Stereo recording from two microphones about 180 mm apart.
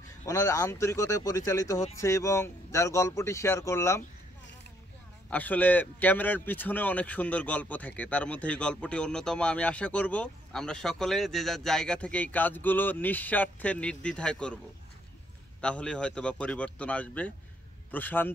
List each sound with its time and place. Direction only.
0.2 s a man's voice: 20° left (ahead or behind)
5.3 s a man's voice: 10° left (ahead or behind)
15.6 s a man's voice: 5° left (ahead or behind)